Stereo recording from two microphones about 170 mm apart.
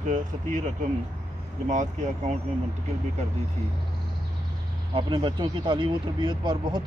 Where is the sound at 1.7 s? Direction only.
45° right (ahead or behind).